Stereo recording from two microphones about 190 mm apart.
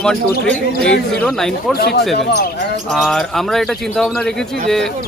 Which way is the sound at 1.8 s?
55° left (ahead or behind).